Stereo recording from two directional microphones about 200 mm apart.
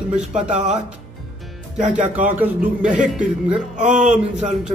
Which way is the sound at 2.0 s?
40° right (ahead or behind).